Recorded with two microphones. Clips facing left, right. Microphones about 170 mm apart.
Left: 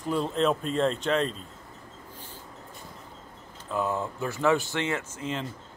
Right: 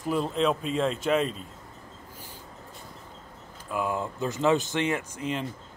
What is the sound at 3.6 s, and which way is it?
A man's voice, 10° right (ahead or behind).